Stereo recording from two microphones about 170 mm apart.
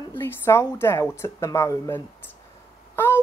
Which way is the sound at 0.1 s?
15° left (ahead or behind).